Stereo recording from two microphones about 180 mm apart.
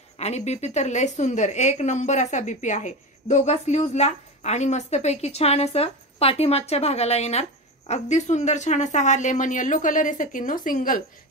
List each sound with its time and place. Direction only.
0.2 s a woman's voice: 40° left (ahead or behind)